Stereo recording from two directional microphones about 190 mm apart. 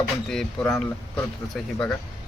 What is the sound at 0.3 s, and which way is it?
Speech, centre (ahead or behind).